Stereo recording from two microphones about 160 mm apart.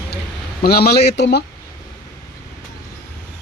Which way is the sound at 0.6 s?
80° left.